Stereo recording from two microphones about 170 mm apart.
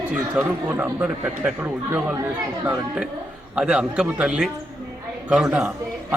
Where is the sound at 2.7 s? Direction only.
5° right (ahead or behind).